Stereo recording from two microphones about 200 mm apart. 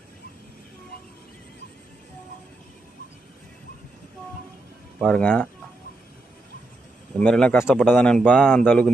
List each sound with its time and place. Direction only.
5.0 s speech: 5° left (ahead or behind)
7.2 s speech: 5° left (ahead or behind)